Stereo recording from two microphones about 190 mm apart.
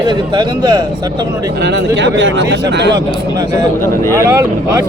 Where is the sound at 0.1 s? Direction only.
25° right (ahead or behind).